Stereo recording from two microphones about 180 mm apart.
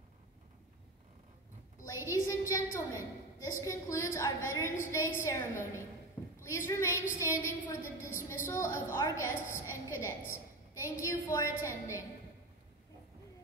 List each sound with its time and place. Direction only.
1.9 s a woman's voice: 15° left (ahead or behind)